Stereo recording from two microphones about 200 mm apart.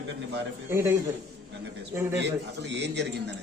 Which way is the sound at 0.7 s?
15° right (ahead or behind).